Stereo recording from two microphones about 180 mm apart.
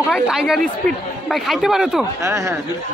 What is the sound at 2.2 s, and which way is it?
Speech, 15° right (ahead or behind).